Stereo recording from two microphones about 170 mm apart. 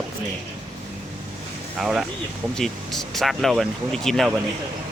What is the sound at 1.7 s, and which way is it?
Speech, 5° right (ahead or behind).